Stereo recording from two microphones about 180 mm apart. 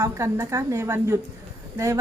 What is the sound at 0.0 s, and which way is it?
A woman's voice, 15° right (ahead or behind).